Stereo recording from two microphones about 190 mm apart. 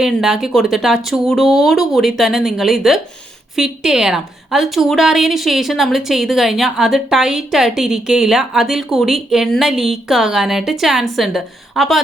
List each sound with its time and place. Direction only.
0.0 s a woman's voice: centre (ahead or behind)